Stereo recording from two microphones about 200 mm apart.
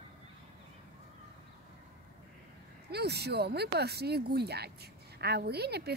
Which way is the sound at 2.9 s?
55° right (ahead or behind).